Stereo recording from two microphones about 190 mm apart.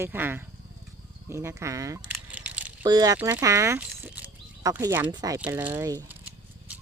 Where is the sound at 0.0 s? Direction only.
10° right (ahead or behind).